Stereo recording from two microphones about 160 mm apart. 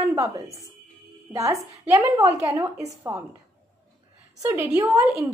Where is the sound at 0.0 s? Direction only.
20° right (ahead or behind).